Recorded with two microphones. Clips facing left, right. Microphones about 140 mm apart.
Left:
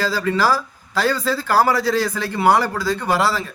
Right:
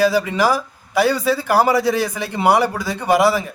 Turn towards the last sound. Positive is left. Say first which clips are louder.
# right 4 dB
turn(degrees=-15)  # may be behind; listen again after turning